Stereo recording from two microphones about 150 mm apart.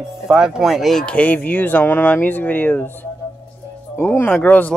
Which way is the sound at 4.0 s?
10° left (ahead or behind).